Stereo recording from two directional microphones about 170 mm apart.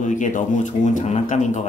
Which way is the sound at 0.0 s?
45° left (ahead or behind).